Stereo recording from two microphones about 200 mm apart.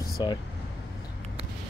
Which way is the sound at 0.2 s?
20° left (ahead or behind).